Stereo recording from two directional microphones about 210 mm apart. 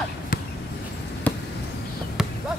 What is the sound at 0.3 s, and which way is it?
Basketball bounce, 45° left (ahead or behind).